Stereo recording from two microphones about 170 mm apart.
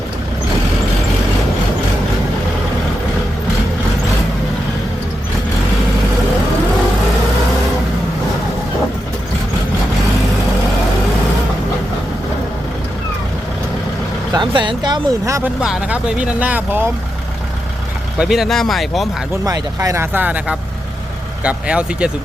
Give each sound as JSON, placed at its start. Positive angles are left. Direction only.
{"t": 14.3, "sound": "speech", "side_deg": -30}
{"t": 15.6, "sound": "speech", "side_deg": -5}
{"t": 18.2, "sound": "speech", "side_deg": 0}
{"t": 19.5, "sound": "speech", "side_deg": -20}